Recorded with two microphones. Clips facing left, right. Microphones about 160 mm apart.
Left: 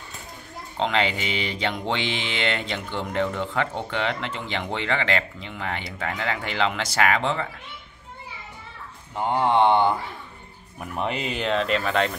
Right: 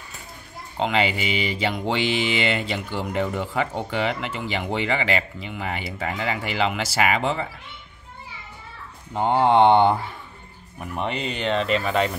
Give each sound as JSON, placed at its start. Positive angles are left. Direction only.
{"t": 0.7, "sound": "speech", "side_deg": -5}
{"t": 9.1, "sound": "mantra", "side_deg": -25}
{"t": 10.8, "sound": "speech", "side_deg": 0}